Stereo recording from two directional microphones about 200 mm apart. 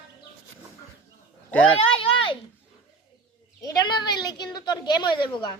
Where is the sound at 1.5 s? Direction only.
5° left (ahead or behind).